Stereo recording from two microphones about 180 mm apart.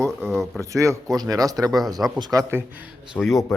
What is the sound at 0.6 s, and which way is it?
Speech, 15° right (ahead or behind).